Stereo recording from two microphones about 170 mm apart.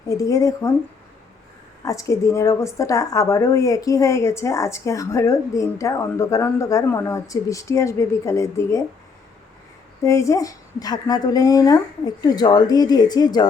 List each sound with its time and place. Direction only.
0.2 s a woman's voice: 20° left (ahead or behind)
1.8 s a woman's voice: 20° left (ahead or behind)
10.0 s a woman's voice: 20° left (ahead or behind)